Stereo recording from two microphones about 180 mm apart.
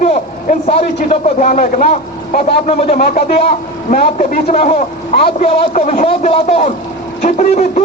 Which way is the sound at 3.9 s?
45° left (ahead or behind).